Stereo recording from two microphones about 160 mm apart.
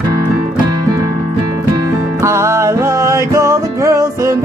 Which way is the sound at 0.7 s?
20° right (ahead or behind).